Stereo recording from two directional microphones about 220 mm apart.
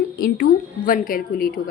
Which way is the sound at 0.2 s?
45° left (ahead or behind).